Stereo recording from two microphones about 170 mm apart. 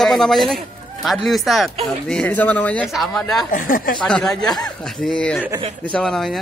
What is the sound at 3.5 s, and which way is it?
Speech, 55° left (ahead or behind).